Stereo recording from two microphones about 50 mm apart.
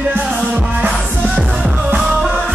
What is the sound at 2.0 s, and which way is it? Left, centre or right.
Music, centre.